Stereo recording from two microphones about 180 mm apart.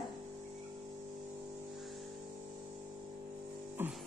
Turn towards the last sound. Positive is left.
turn(degrees=-10)  # may be behind; listen again after turning